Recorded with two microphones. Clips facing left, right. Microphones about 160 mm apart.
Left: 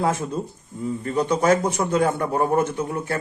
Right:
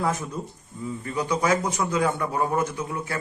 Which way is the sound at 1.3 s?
55° left (ahead or behind).